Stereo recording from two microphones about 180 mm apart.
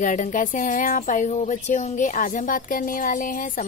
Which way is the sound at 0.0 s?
45° left (ahead or behind).